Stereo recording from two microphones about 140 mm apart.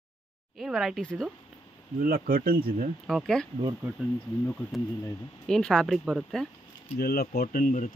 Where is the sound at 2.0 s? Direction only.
90° right.